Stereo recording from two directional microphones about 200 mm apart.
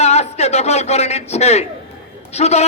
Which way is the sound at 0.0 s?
35° left (ahead or behind).